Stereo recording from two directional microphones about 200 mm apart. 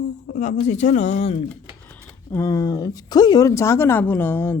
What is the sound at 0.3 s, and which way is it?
Speech, 35° left (ahead or behind).